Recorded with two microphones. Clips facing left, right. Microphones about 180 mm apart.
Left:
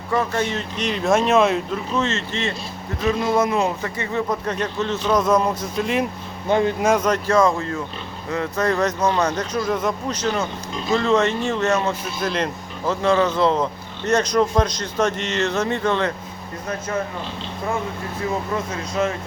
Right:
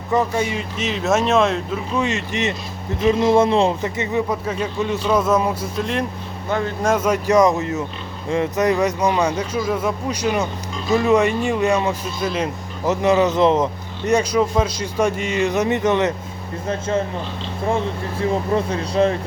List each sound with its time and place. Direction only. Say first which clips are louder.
0.1 s speech: right 2 dB; 15° right (ahead or behind); by 1.8 s centre (ahead or behind)
2.0 s speech: right 2 dB; 15° right (ahead or behind)
4.3 s speech: right 1 dB; 10° right (ahead or behind)
5.8 s speech: left 2 dB; 5° left (ahead or behind)
6.5 s speech: left 4 dB; 20° left (ahead or behind)
6.8 s speech: even; 5° right (ahead or behind)
7.3 s speech: right 4 dB; 20° right (ahead or behind)
12.2 s speech: right 1 dB; 5° right (ahead or behind)
12.8 s speech: right 2 dB; 20° right (ahead or behind)
18.5 s speech: right 5 dB; 30° right (ahead or behind)